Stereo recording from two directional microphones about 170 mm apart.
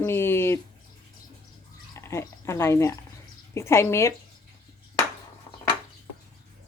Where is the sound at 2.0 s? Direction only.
15° left (ahead or behind).